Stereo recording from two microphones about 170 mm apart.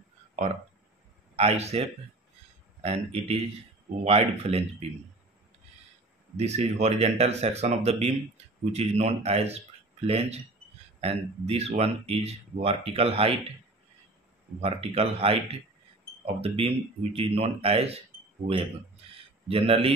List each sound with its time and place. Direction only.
1.3 s a man's voice: 40° right (ahead or behind)
6.3 s speech: 40° right (ahead or behind)
14.6 s speech: 35° right (ahead or behind)
18.4 s a man's voice: 50° right (ahead or behind)
19.4 s speech: 35° right (ahead or behind)